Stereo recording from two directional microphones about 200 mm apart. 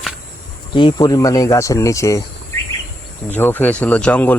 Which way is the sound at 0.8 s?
20° left (ahead or behind).